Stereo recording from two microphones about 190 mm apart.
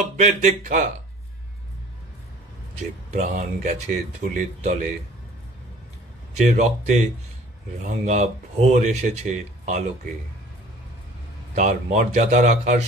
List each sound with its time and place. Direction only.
0.0 s speech: 40° right (ahead or behind)
3.1 s speech: 40° right (ahead or behind)
6.3 s speech: 40° right (ahead or behind)
11.5 s speech: 40° right (ahead or behind)